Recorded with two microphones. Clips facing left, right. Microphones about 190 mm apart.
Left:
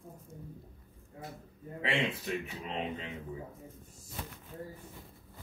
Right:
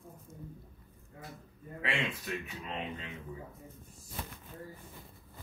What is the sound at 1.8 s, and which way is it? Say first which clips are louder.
A man's voice: left 3 dB; 25° left (ahead or behind).